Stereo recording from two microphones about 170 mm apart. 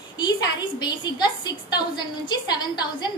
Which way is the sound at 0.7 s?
25° left (ahead or behind).